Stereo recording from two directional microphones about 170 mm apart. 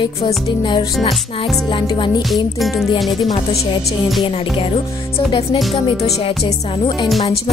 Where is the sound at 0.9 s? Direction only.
Centre (ahead or behind).